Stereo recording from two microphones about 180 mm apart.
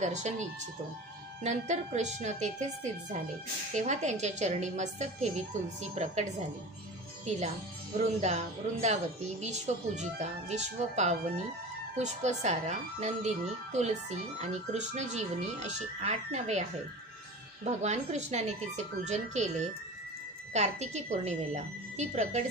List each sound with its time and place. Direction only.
0.0 s speech: 40° right (ahead or behind)
7.2 s speech: 40° right (ahead or behind)
8.8 s speech: 40° right (ahead or behind)
17.6 s speech: 40° right (ahead or behind)